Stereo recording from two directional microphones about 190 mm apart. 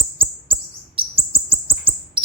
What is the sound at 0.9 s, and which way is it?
Chirp, 30° right (ahead or behind).